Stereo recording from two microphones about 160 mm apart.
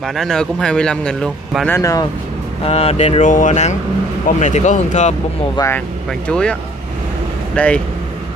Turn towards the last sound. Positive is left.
turn(degrees=10)  # may be behind; listen again after turning